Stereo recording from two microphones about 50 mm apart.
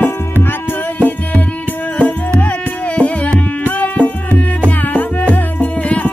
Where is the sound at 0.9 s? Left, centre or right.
Left.